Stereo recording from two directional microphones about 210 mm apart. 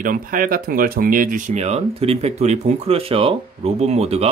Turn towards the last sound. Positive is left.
turn(degrees=-30)  # may be behind; listen again after turning